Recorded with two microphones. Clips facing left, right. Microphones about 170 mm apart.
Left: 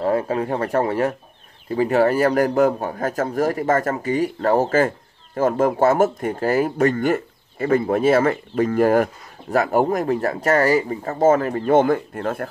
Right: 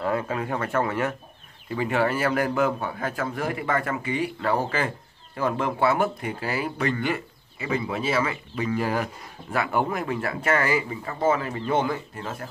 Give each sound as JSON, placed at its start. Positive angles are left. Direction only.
{"t": 0.0, "sound": "a man's voice", "side_deg": 35}